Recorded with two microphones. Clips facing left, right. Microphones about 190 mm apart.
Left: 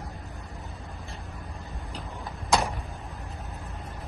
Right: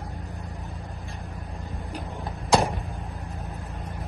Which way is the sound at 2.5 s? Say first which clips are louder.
Right 4 dB; 30° right (ahead or behind).